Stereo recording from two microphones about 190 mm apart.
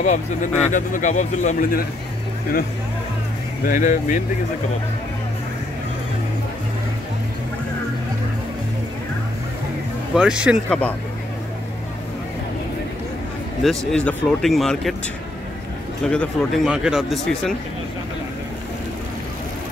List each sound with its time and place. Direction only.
0.0 s speech: 40° left (ahead or behind)
3.6 s speech: 40° left (ahead or behind)
10.1 s speech: 5° right (ahead or behind)
10.7 s speech: 10° left (ahead or behind)
13.6 s speech: 5° left (ahead or behind)
16.1 s speech: 5° left (ahead or behind)